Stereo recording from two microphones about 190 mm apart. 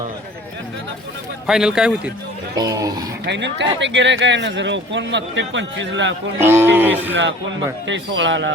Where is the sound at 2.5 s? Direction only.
20° right (ahead or behind).